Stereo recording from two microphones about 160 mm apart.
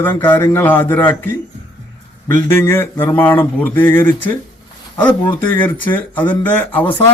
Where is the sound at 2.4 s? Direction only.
15° left (ahead or behind).